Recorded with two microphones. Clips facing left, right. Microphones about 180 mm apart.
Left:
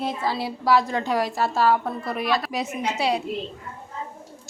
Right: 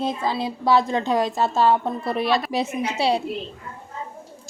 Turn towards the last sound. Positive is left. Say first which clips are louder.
# right 2 dB
turn(degrees=-30)  # may be behind; listen again after turning